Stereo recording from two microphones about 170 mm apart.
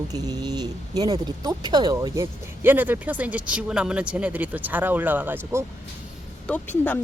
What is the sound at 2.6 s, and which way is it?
Speech, 10° right (ahead or behind).